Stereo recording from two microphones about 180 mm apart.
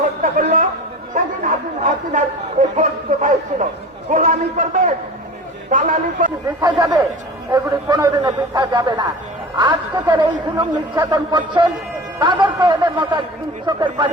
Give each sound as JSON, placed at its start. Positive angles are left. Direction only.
{"t": 0.2, "sound": "a sound", "side_deg": -45}
{"t": 1.1, "sound": "a man's voice", "side_deg": -45}
{"t": 6.6, "sound": "a man's voice", "side_deg": -20}